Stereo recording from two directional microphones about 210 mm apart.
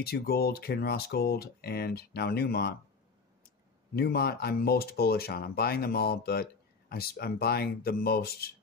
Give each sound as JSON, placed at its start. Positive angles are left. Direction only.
{"t": 0.0, "sound": "speech", "side_deg": 50}